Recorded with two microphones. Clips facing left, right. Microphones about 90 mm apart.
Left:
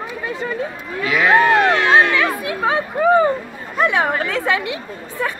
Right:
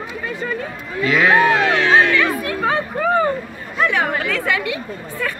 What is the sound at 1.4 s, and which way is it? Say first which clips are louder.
Speech: left 2 dB; 40° left (ahead or behind).